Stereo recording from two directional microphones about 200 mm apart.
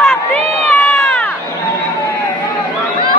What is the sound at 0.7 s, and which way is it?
Run, 10° left (ahead or behind).